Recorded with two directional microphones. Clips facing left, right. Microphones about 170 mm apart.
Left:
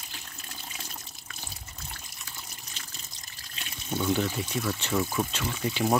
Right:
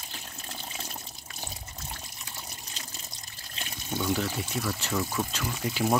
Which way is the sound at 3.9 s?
Centre (ahead or behind).